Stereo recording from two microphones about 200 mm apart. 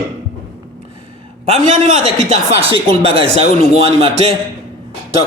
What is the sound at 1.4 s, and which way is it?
A man's voice, 35° right (ahead or behind).